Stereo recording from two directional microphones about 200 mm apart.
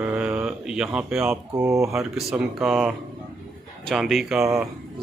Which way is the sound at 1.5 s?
15° right (ahead or behind).